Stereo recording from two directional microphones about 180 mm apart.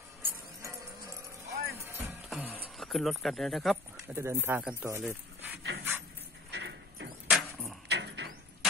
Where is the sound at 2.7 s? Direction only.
Centre (ahead or behind).